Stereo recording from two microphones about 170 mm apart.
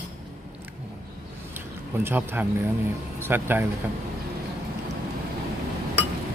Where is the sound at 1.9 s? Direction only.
10° right (ahead or behind).